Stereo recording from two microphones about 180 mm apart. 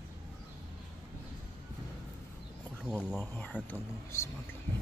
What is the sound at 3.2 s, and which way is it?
Speech, 10° left (ahead or behind).